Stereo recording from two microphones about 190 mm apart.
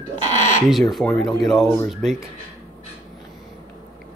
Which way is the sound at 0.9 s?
Centre (ahead or behind).